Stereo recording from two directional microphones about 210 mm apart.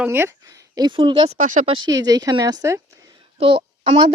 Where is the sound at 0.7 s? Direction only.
20° right (ahead or behind).